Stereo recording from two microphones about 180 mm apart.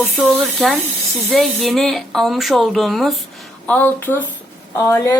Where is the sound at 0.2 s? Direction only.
Centre (ahead or behind).